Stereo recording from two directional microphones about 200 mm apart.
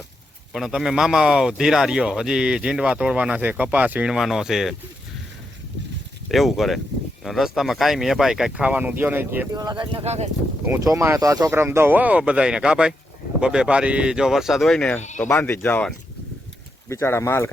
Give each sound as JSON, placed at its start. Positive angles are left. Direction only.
{"t": 0.5, "sound": "speech", "side_deg": 0}
{"t": 6.3, "sound": "speech", "side_deg": 0}
{"t": 10.7, "sound": "speech", "side_deg": -15}